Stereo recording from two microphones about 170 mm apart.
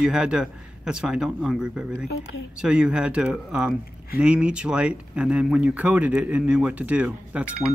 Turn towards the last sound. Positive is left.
turn(degrees=-5)  # may be behind; listen again after turning